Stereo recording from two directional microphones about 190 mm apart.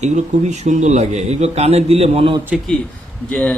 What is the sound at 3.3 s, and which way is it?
Speech, 5° left (ahead or behind).